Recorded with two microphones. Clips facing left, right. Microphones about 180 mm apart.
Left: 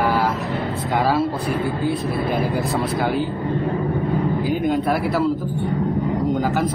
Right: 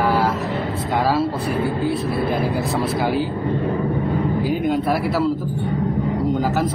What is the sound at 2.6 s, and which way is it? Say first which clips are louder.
Speech: right 1 dB; centre (ahead or behind).